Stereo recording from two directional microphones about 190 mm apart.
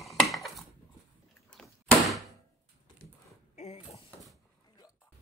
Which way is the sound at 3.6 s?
30° left (ahead or behind).